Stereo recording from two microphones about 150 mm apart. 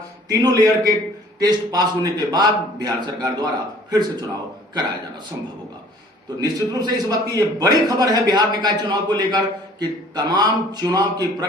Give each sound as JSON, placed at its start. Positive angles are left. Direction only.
{"t": 0.3, "sound": "a man's voice", "side_deg": -25}
{"t": 6.4, "sound": "a man's voice", "side_deg": -25}